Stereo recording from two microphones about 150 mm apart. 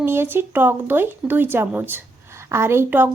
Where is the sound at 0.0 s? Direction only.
15° right (ahead or behind).